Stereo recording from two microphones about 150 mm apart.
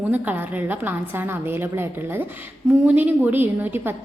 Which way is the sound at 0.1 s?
10° right (ahead or behind).